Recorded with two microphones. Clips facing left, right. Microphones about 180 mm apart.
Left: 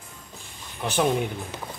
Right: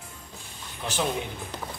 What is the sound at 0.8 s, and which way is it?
Speech, 60° left (ahead or behind).